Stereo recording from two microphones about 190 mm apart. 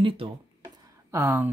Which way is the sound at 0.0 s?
30° right (ahead or behind).